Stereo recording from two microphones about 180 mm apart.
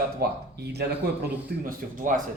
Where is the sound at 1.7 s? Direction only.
45° right (ahead or behind).